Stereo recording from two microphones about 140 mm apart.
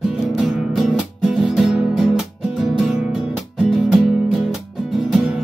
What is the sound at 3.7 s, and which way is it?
Music, centre (ahead or behind).